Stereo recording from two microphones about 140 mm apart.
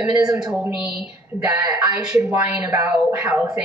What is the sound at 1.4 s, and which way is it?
A woman's voice, 20° right (ahead or behind).